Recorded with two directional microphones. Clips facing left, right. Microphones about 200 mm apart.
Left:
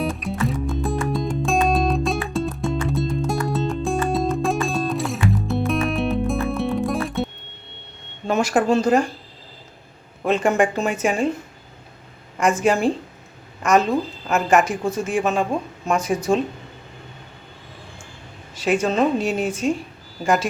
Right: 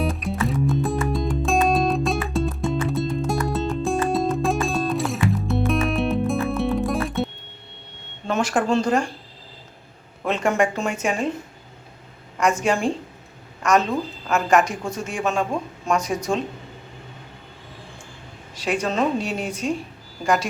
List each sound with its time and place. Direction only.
0.0 s music: centre (ahead or behind)
8.3 s speech: 10° left (ahead or behind)
10.2 s a woman's voice: centre (ahead or behind)
12.6 s a woman's voice: 5° left (ahead or behind)
18.6 s a woman's voice: 5° left (ahead or behind)